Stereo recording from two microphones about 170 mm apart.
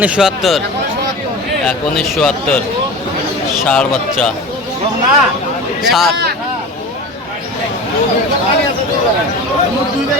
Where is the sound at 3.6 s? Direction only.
5° left (ahead or behind).